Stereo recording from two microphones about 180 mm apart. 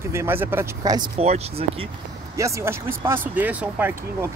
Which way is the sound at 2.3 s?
15° right (ahead or behind).